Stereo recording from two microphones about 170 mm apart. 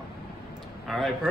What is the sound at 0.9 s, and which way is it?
Speech, centre (ahead or behind).